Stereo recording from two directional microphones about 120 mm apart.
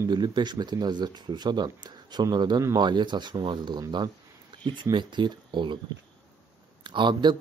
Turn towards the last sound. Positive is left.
turn(degrees=-40)  # may be behind; listen again after turning